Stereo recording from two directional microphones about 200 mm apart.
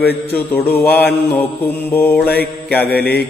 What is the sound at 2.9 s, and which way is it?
Mantra, 50° left (ahead or behind).